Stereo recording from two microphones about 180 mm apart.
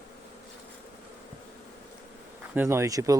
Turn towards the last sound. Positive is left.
turn(degrees=-20)  # may be behind; listen again after turning